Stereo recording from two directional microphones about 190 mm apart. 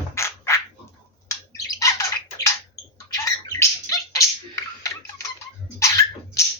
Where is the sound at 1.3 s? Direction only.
15° left (ahead or behind).